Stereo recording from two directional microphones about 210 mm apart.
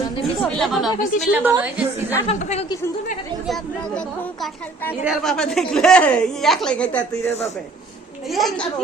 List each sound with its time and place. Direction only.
0.4 s a woman's voice: centre (ahead or behind)
2.2 s a woman's voice: 30° left (ahead or behind)
3.4 s a woman's voice: centre (ahead or behind)
5.0 s a woman's voice: centre (ahead or behind)
8.3 s a woman's voice: centre (ahead or behind)